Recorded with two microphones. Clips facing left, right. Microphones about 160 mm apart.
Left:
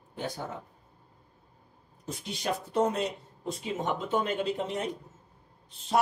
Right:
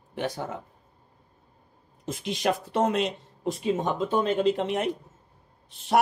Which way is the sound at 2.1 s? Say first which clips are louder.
Right 6 dB; 90° right.